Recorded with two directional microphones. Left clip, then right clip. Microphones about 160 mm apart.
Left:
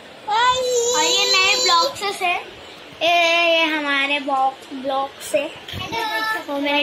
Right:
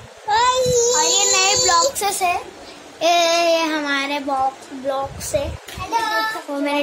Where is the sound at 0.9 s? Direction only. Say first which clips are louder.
Even; 65° right (ahead or behind).